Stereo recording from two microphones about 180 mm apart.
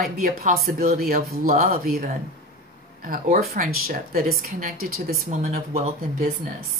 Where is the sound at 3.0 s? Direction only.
55° right (ahead or behind).